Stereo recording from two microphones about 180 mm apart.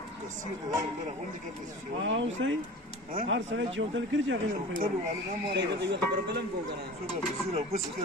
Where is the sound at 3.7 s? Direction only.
90° right.